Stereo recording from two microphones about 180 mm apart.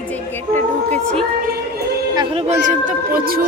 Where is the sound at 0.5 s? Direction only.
10° left (ahead or behind).